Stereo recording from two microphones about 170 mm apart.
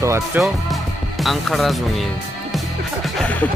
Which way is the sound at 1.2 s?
Centre (ahead or behind).